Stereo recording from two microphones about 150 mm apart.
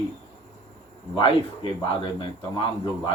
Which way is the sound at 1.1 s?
35° left (ahead or behind).